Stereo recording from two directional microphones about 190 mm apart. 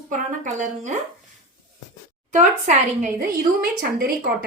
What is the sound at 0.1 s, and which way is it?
Speech, 40° right (ahead or behind).